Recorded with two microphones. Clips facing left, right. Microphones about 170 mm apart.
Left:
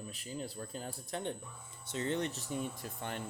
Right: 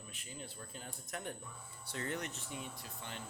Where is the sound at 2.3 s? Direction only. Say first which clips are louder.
Left 7 dB; 40° left (ahead or behind).